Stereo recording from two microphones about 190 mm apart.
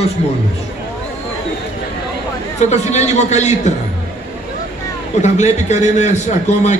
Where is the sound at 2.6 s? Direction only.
35° left (ahead or behind).